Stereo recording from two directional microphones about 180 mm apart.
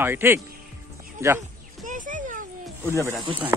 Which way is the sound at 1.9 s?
45° right (ahead or behind).